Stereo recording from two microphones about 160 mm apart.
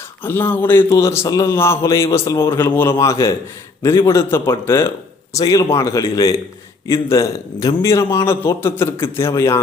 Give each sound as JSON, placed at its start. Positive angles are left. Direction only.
{"t": 0.2, "sound": "a man's voice", "side_deg": 15}